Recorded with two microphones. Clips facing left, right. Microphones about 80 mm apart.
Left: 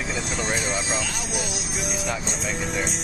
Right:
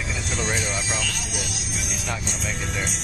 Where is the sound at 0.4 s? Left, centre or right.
Left.